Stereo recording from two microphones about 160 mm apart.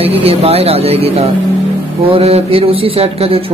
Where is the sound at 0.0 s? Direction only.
40° right (ahead or behind).